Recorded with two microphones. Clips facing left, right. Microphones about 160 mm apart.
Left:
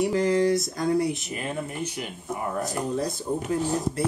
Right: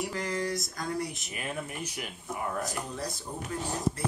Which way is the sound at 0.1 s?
25° left (ahead or behind).